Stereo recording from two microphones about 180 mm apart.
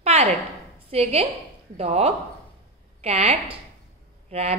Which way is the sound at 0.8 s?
35° right (ahead or behind).